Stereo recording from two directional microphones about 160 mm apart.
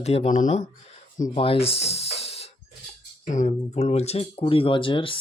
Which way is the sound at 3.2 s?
50° left (ahead or behind).